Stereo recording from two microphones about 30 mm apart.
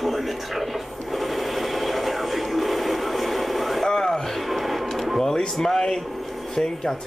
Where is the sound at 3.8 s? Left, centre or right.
Centre.